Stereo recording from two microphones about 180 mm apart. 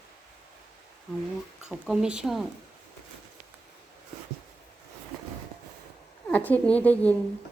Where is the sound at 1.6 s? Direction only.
5° right (ahead or behind).